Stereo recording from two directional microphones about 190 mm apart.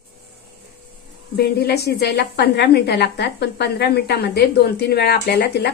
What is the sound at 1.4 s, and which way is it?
A woman's voice, 55° left (ahead or behind).